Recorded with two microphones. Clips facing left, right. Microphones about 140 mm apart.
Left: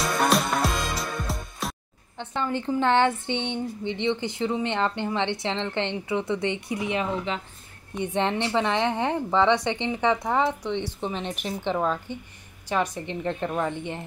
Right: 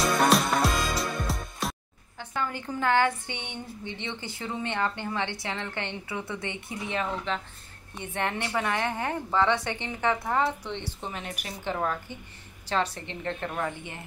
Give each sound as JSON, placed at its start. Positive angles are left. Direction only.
{"t": 0.0, "sound": "music", "side_deg": 0}
{"t": 2.1, "sound": "a woman's voice", "side_deg": 25}